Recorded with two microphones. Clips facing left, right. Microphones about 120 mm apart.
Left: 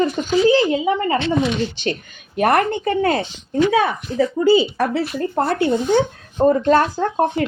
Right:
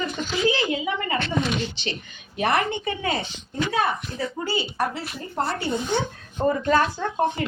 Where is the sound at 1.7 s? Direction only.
50° left (ahead or behind).